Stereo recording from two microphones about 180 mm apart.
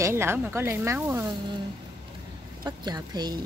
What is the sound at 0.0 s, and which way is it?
A woman's voice, 15° right (ahead or behind).